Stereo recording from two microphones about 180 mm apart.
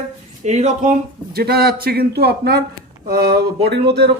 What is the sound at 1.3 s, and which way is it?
Speech, 60° right (ahead or behind).